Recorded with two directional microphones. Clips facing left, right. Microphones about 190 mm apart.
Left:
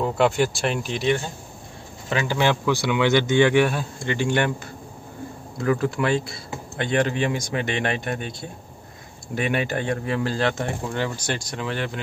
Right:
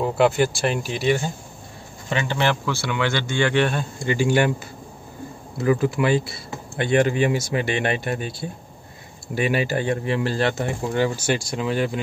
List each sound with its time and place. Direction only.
0.0 s speech: centre (ahead or behind)
4.1 s speech: 5° right (ahead or behind)
5.6 s speech: 5° right (ahead or behind)